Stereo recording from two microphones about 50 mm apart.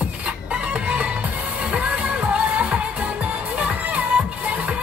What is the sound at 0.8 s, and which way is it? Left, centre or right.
Music, right.